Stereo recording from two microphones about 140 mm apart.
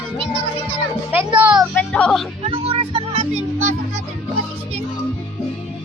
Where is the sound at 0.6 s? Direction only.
15° right (ahead or behind).